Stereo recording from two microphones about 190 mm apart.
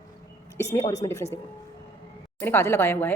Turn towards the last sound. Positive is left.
turn(degrees=10)  # may be behind; listen again after turning